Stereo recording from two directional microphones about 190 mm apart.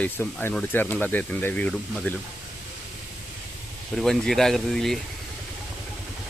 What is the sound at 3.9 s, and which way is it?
Speech, centre (ahead or behind).